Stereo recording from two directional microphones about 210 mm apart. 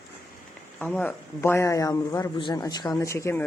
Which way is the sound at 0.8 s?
5° left (ahead or behind).